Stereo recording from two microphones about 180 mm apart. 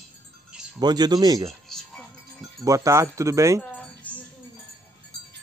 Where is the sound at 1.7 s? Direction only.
Centre (ahead or behind).